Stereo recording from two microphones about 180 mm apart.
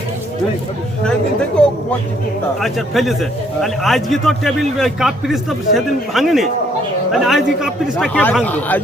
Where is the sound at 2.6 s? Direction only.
Centre (ahead or behind).